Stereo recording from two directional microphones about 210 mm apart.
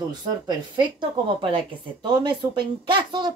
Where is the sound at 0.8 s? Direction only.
25° right (ahead or behind).